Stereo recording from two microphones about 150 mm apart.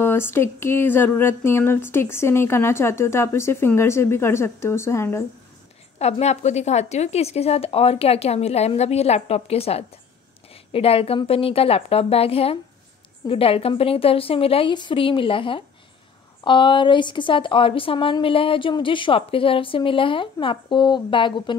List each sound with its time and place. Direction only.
0.0 s speech: 15° left (ahead or behind)
5.9 s a woman's voice: 45° left (ahead or behind)